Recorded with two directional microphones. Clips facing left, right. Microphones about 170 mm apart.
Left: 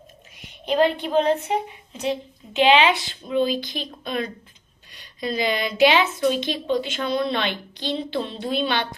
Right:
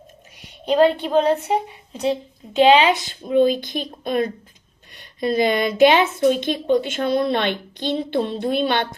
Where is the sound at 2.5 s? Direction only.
40° right (ahead or behind).